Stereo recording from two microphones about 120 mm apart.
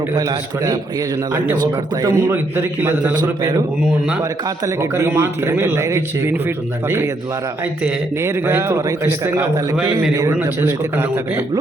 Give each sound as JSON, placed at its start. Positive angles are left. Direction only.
{"t": 0.1, "sound": "a man's voice", "side_deg": -30}
{"t": 2.0, "sound": "a man's voice", "side_deg": -30}
{"t": 2.3, "sound": "a man's voice", "side_deg": -20}
{"t": 4.2, "sound": "speech", "side_deg": -25}
{"t": 8.2, "sound": "speech", "side_deg": -20}